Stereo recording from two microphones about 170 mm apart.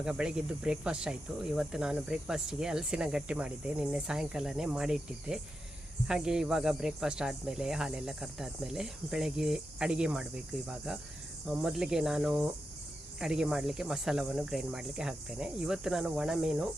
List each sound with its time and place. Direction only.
0.0 s speech: 5° right (ahead or behind)
11.4 s speech: 5° right (ahead or behind)